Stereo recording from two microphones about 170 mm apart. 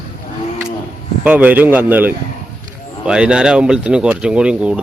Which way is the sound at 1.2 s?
10° right (ahead or behind).